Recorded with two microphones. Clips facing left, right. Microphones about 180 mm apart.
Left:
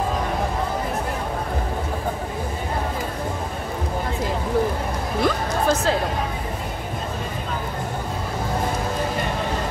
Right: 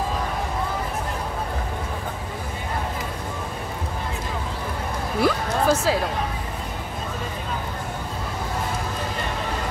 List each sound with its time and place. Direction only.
5.2 s music: 5° right (ahead or behind)